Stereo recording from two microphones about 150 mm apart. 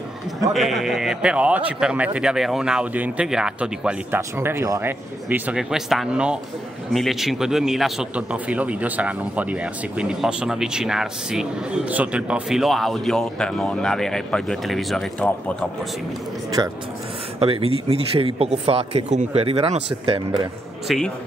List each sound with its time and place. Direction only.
0.5 s speech: centre (ahead or behind)
16.6 s speech: 25° right (ahead or behind)
17.4 s speech: 40° right (ahead or behind)
20.9 s speech: centre (ahead or behind)